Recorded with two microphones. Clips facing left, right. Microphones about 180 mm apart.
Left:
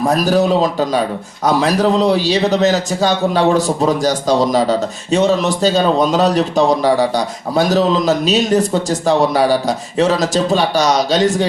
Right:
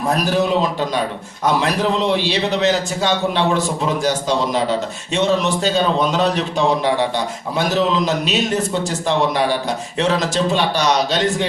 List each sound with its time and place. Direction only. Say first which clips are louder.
0.1 s a man's voice: left 3 dB; 40° left (ahead or behind)
1.5 s a man's voice: left 4 dB; 40° left (ahead or behind)